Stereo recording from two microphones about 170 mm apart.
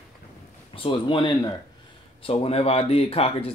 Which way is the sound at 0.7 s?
30° left (ahead or behind).